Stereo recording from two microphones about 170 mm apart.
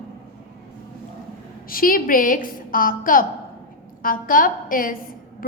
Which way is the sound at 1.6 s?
55° left (ahead or behind).